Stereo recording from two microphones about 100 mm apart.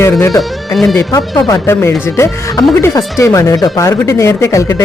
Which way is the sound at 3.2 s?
30° left (ahead or behind).